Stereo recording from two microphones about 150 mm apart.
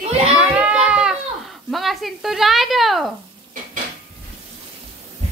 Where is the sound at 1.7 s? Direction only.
Centre (ahead or behind).